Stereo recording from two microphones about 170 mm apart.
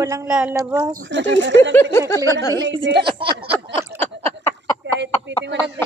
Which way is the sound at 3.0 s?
30° right (ahead or behind).